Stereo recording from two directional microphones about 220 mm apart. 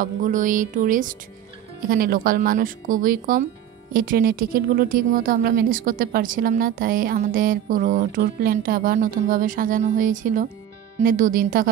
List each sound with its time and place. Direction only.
0.0 s speech: 35° right (ahead or behind)